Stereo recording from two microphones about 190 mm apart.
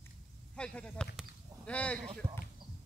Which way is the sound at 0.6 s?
5° left (ahead or behind).